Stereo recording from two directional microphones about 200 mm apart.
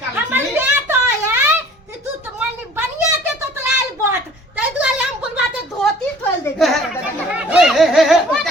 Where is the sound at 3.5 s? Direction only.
10° right (ahead or behind).